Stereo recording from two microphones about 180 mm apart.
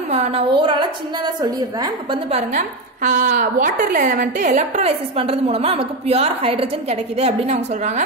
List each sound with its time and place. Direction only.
0.1 s a woman's voice: 35° right (ahead or behind)
2.3 s a woman's voice: 45° right (ahead or behind)